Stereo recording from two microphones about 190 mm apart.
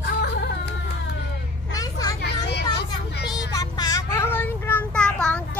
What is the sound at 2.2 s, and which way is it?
Children playing, 60° left (ahead or behind).